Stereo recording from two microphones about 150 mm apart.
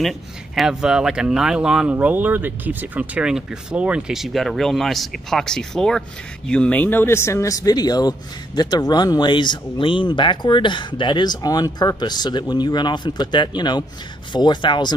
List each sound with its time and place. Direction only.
0.6 s speech: 5° right (ahead or behind); by 15.0 s 30° left (ahead or behind)